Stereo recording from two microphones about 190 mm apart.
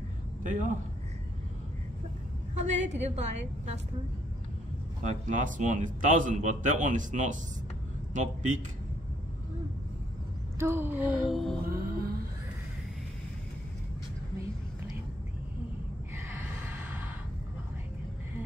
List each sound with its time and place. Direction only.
0.4 s a man's voice: 40° right (ahead or behind)
2.5 s a woman's voice: 40° right (ahead or behind)
5.0 s a man's voice: 40° right (ahead or behind)
10.6 s a sound: 10° right (ahead or behind)
11.7 s music: 50° right (ahead or behind)
16.7 s gasp: 10° right (ahead or behind)